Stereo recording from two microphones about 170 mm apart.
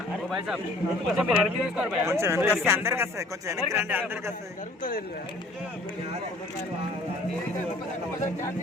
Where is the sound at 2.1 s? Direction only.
15° right (ahead or behind).